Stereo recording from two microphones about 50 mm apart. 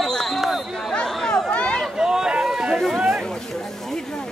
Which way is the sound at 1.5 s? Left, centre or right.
Centre.